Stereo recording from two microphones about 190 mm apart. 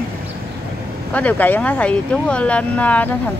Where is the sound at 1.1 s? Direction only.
10° left (ahead or behind).